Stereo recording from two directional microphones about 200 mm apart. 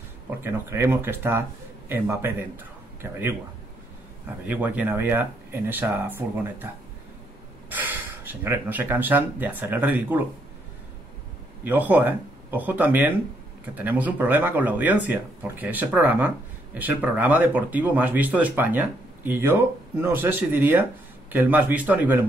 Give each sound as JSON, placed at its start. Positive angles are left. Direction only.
{"t": 0.4, "sound": "speech", "side_deg": -10}
{"t": 4.5, "sound": "speech", "side_deg": -10}
{"t": 7.7, "sound": "speech", "side_deg": -10}
{"t": 11.6, "sound": "speech", "side_deg": -10}